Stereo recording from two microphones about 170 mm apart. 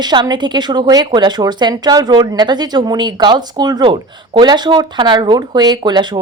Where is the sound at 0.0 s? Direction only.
25° right (ahead or behind).